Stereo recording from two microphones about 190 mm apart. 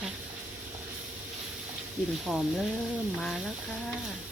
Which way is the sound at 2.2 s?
5° right (ahead or behind).